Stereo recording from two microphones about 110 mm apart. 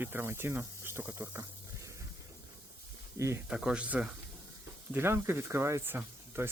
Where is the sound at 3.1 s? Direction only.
25° right (ahead or behind).